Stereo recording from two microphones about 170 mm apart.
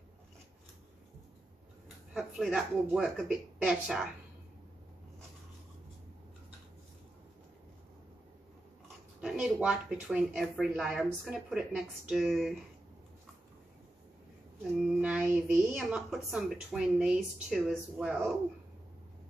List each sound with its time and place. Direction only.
2.1 s a woman's voice: centre (ahead or behind)
9.2 s a woman's voice: 5° right (ahead or behind)
14.6 s a woman's voice: 5° right (ahead or behind)